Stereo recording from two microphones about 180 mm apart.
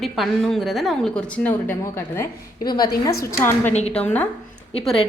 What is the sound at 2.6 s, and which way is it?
Speech, 25° left (ahead or behind).